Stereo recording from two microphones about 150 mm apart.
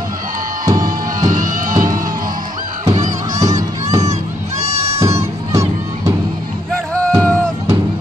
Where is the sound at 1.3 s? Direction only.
65° right (ahead or behind).